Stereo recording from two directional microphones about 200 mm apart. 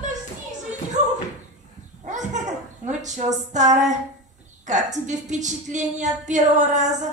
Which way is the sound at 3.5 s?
35° right (ahead or behind).